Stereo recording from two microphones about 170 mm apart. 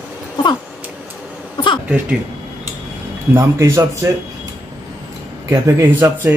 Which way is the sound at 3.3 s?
15° right (ahead or behind).